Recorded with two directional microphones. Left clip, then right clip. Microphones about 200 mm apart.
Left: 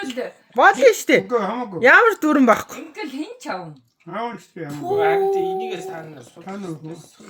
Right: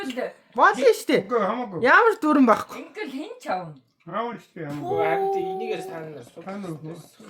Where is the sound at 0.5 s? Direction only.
25° left (ahead or behind).